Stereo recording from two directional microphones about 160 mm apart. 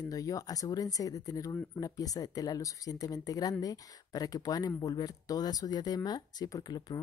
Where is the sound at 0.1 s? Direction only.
20° left (ahead or behind).